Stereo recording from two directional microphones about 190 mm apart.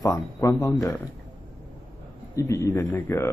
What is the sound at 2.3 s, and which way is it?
Speech, 15° left (ahead or behind).